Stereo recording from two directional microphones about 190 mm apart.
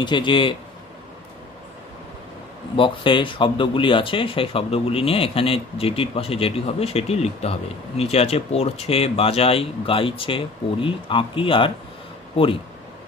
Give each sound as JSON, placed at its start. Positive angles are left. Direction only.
{"t": 0.0, "sound": "speech", "side_deg": 25}
{"t": 2.7, "sound": "speech", "side_deg": 25}